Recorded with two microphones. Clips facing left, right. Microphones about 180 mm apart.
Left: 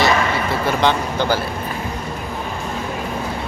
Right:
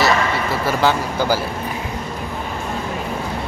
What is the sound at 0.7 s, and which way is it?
Speech, 5° right (ahead or behind).